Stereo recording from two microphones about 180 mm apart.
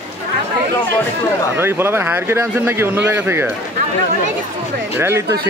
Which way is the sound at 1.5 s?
15° right (ahead or behind).